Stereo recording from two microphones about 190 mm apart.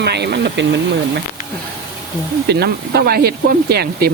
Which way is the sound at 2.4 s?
60° right (ahead or behind).